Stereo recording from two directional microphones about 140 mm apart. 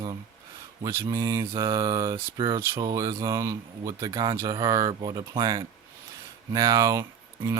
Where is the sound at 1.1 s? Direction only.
25° right (ahead or behind).